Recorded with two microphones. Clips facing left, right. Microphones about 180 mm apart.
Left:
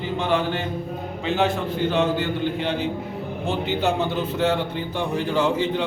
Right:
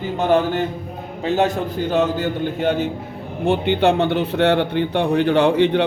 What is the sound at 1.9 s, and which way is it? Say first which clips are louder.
Speech: right 4 dB; 45° right (ahead or behind).